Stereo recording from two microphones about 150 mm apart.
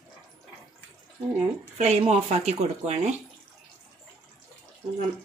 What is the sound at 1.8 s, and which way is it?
Speech, 45° right (ahead or behind).